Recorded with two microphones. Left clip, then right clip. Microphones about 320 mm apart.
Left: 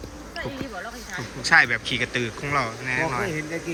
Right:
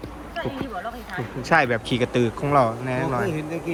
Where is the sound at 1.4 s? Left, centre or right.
Centre.